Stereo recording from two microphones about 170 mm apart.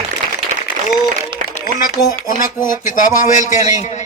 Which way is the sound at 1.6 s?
55° left (ahead or behind).